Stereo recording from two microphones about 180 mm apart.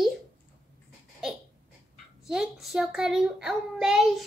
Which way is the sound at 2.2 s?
5° right (ahead or behind).